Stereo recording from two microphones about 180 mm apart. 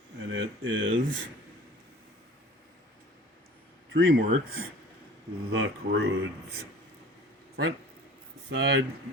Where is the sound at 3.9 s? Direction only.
90° right.